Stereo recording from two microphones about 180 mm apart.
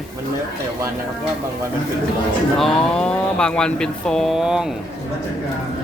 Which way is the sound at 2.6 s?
5° left (ahead or behind).